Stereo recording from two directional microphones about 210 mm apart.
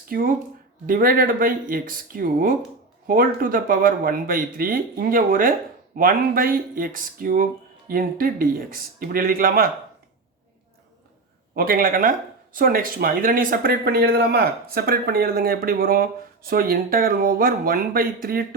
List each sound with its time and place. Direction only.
0.1 s speech: 40° right (ahead or behind)
11.5 s speech: 45° right (ahead or behind)